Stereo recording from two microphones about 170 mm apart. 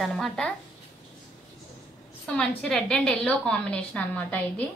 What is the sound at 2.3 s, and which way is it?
A woman's voice, 5° left (ahead or behind).